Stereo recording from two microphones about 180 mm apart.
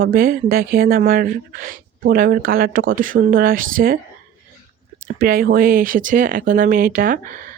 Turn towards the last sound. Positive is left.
turn(degrees=-50)  # may be behind; listen again after turning